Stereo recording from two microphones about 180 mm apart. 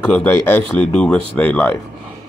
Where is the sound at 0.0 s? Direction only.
10° left (ahead or behind).